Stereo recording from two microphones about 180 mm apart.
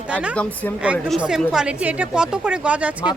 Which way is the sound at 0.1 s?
5° right (ahead or behind).